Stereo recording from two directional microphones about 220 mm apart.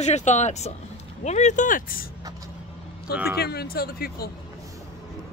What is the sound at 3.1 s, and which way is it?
Speech, 5° right (ahead or behind).